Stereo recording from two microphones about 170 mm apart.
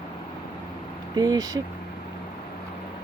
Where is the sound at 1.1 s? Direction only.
20° right (ahead or behind).